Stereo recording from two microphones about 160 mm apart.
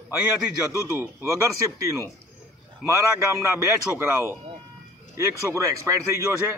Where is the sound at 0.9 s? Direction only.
20° right (ahead or behind).